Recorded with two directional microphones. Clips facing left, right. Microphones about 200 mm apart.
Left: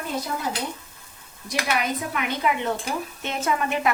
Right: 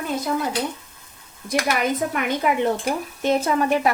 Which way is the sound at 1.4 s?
50° right (ahead or behind).